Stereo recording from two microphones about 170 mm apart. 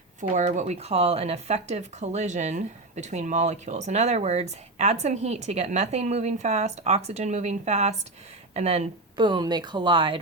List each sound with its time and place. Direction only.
0.2 s a woman's voice: 45° right (ahead or behind); by 10.2 s 30° right (ahead or behind)